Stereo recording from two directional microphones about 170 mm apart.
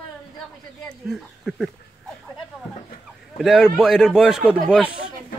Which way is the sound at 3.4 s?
5° right (ahead or behind).